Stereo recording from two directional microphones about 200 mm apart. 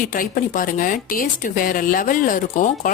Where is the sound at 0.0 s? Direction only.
45° left (ahead or behind).